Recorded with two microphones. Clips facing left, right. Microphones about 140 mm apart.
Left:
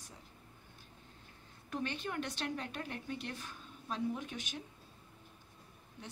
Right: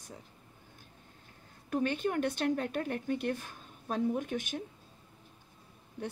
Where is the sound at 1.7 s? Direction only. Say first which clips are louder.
Right 8 dB; 50° right (ahead or behind).